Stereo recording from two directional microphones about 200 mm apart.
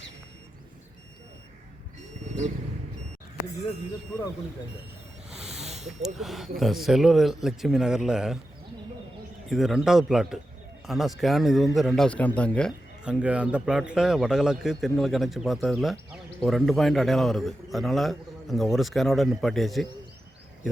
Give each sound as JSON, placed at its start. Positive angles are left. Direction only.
{"t": 5.5, "sound": "snake", "side_deg": -35}
{"t": 6.0, "sound": "a man's voice", "side_deg": 0}
{"t": 9.5, "sound": "a man's voice", "side_deg": 0}
{"t": 13.1, "sound": "a man's voice", "side_deg": -5}